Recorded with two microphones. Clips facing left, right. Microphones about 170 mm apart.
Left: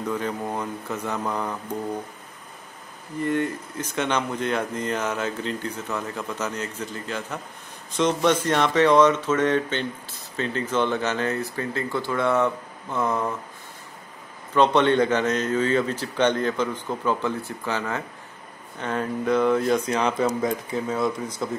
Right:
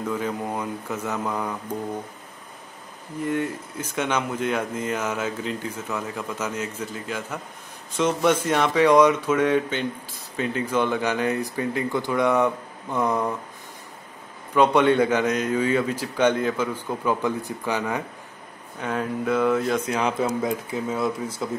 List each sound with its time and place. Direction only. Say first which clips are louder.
0.0 s speech: even; 5° right (ahead or behind)
3.3 s speech: left 1 dB; 5° right (ahead or behind)
14.5 s speech: right 1 dB; 10° right (ahead or behind)